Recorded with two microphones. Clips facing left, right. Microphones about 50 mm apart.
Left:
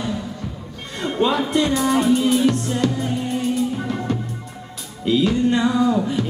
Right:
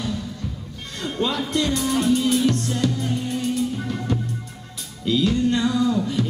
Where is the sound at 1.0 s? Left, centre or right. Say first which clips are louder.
Left 5 dB; centre.